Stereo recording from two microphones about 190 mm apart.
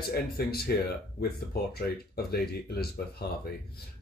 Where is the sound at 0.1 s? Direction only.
55° left (ahead or behind).